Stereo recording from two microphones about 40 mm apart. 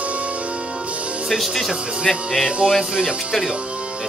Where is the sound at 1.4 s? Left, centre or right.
Centre.